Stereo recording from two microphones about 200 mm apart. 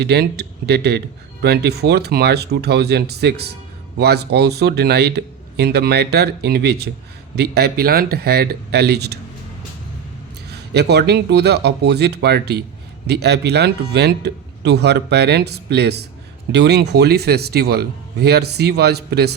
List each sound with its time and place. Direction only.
0.0 s speech: 55° right (ahead or behind)
10.5 s speech: 55° right (ahead or behind)